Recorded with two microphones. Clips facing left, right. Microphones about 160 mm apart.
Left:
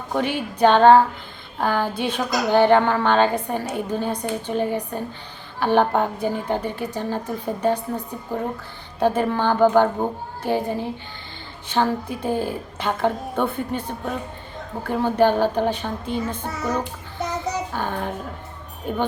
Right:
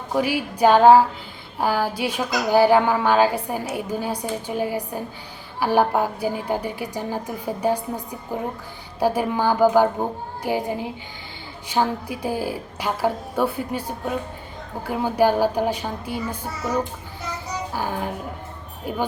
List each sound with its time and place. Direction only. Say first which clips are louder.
0.1 s speech: right 1 dB; 5° right (ahead or behind)
17.7 s speech: even; 5° right (ahead or behind)